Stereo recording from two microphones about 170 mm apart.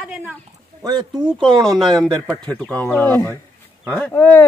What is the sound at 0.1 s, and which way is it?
Speech, 10° right (ahead or behind).